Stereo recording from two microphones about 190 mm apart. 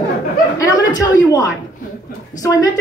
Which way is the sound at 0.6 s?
20° left (ahead or behind).